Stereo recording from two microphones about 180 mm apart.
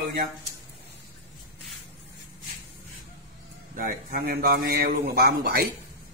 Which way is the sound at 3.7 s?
50° right (ahead or behind).